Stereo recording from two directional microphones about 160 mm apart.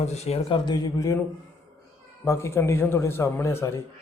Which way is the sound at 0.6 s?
25° left (ahead or behind).